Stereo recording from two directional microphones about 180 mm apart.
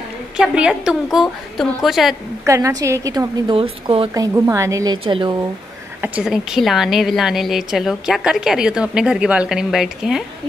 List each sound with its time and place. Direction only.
0.4 s a woman's voice: 5° right (ahead or behind)
2.4 s a woman's voice: 15° right (ahead or behind)
3.5 s a woman's voice: 30° right (ahead or behind)
5.9 s a woman's voice: 10° right (ahead or behind)